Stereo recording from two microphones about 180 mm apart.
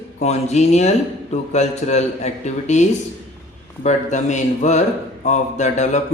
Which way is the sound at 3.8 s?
40° left (ahead or behind).